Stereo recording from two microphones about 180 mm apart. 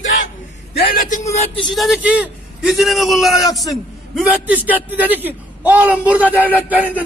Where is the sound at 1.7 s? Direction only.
Centre (ahead or behind).